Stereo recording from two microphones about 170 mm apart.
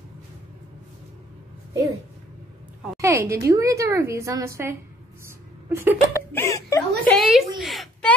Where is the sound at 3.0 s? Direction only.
15° right (ahead or behind).